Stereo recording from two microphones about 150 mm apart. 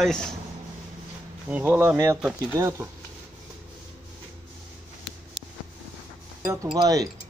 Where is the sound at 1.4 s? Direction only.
10° right (ahead or behind).